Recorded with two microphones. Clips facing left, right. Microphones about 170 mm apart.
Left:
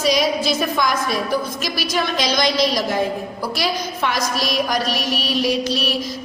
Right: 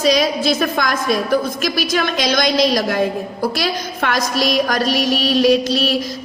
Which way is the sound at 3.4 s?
70° right (ahead or behind).